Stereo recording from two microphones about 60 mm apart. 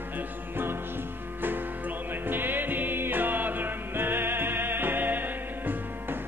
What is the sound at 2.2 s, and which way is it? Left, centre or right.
Music, right.